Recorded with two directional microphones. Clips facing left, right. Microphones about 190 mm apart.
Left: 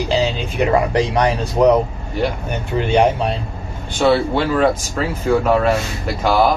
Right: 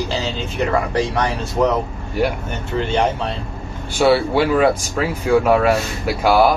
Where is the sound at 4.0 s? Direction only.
10° right (ahead or behind).